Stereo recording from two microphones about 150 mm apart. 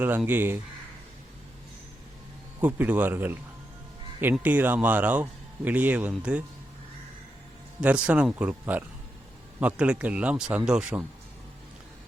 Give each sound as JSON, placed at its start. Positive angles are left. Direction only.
{"t": 0.3, "sound": "a man's voice", "side_deg": -15}
{"t": 2.6, "sound": "a man's voice", "side_deg": -10}
{"t": 7.8, "sound": "a man's voice", "side_deg": -5}